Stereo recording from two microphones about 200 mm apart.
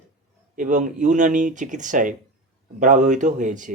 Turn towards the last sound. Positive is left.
turn(degrees=-40)  # may be behind; listen again after turning